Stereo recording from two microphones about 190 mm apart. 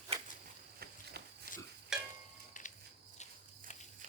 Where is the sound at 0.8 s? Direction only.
60° right (ahead or behind).